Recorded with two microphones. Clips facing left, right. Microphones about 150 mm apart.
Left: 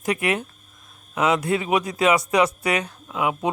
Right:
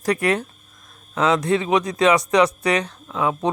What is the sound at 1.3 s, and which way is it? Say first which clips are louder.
Speech: right 4 dB; 20° left (ahead or behind).